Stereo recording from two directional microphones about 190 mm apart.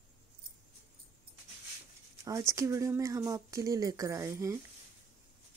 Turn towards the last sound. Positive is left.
turn(degrees=-15)  # may be behind; listen again after turning